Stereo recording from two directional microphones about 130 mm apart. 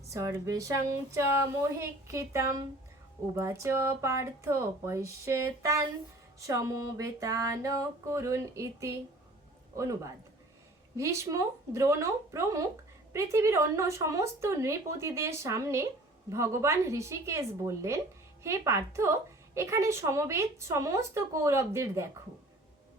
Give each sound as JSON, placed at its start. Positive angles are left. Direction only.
{"t": 0.1, "sound": "speech", "side_deg": -25}